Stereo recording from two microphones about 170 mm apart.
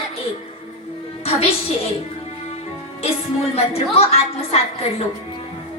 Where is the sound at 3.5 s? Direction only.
40° left (ahead or behind).